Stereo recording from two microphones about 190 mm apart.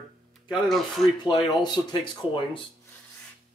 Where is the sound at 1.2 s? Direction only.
25° left (ahead or behind).